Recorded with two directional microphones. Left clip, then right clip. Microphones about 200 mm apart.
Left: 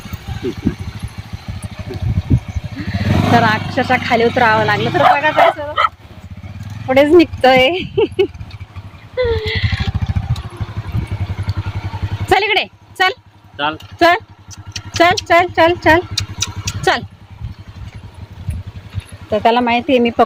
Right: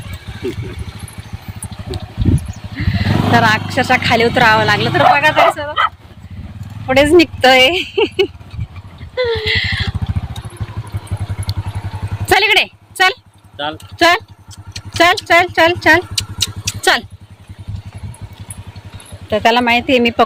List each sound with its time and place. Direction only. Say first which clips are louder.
0.1 s a sound: even; 55° left (ahead or behind)
2.8 s speech: even; centre (ahead or behind)
6.8 s speech: even; 5° left (ahead or behind)
9.1 s horse: right 2 dB; 5° left (ahead or behind)
11.5 s vehicle: right 6 dB; centre (ahead or behind)
12.3 s a sound: right 3 dB; 5° left (ahead or behind)
13.6 s speech: left 3 dB; 55° left (ahead or behind)
14.9 s speech: right 1 dB; 5° left (ahead or behind)
16.1 s rodents: right 2 dB; 45° left (ahead or behind)
19.3 s speech: right 1 dB; 5° left (ahead or behind)